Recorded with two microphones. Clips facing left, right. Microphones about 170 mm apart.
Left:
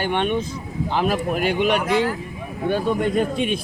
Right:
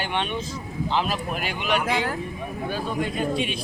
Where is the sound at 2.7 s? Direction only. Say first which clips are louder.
Left 8 dB; 55° left (ahead or behind).